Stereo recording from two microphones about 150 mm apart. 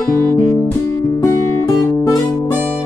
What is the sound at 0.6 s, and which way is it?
Music, 20° left (ahead or behind).